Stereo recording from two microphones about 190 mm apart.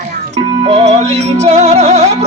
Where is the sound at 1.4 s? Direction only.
35° right (ahead or behind).